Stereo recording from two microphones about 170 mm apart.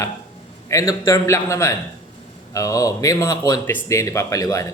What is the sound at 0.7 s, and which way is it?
Speech, 20° left (ahead or behind).